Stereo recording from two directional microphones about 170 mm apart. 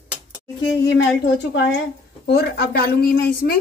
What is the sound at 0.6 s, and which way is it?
Speech, 90° left.